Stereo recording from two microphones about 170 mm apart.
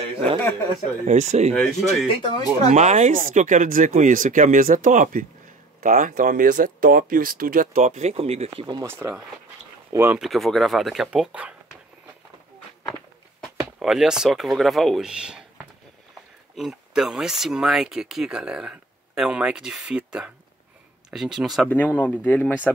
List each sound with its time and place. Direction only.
1.0 s speech: 45° right (ahead or behind)
1.5 s speech: centre (ahead or behind)
2.2 s speech: 25° left (ahead or behind)
2.7 s speech: 40° right (ahead or behind)
8.8 s speech: 15° right (ahead or behind)
10.2 s speech: centre (ahead or behind)
13.4 s speech: centre (ahead or behind)
21.6 s speech: 10° left (ahead or behind)